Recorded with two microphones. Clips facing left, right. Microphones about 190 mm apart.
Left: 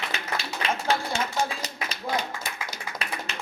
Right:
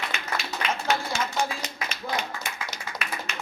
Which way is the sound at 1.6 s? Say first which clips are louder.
Even; 35° left (ahead or behind).